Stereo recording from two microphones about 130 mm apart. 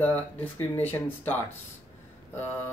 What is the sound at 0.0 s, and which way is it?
Speech, 15° left (ahead or behind).